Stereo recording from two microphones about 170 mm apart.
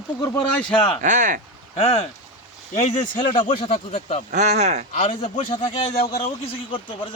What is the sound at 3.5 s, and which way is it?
Speech, 45° left (ahead or behind).